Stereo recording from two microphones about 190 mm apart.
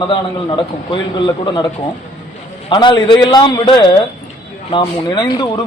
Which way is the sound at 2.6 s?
25° left (ahead or behind).